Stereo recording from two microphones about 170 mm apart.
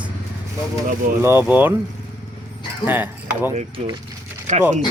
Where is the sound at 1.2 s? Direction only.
10° right (ahead or behind).